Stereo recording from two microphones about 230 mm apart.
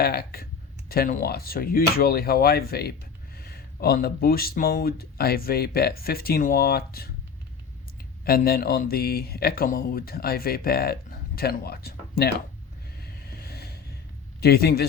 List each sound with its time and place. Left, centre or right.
0.0 s speech: left
8.2 s speech: left
13.0 s a sound: left
14.4 s speech: left